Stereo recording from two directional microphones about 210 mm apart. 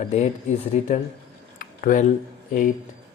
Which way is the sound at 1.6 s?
40° left (ahead or behind).